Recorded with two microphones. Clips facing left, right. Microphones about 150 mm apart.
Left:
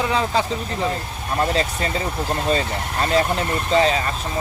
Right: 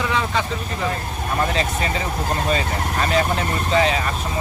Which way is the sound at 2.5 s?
30° left (ahead or behind).